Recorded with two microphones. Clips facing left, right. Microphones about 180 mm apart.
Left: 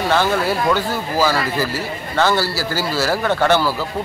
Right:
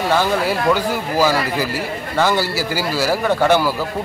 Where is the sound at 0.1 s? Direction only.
10° right (ahead or behind).